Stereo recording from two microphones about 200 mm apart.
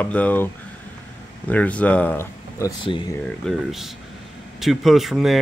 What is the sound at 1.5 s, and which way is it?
Speech, 5° left (ahead or behind).